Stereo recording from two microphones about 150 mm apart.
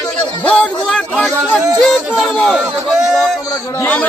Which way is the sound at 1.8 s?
Centre (ahead or behind).